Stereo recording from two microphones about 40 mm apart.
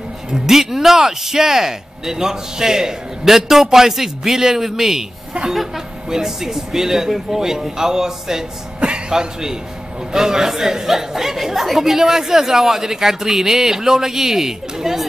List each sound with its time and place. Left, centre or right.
0.3 s a woman's voice: centre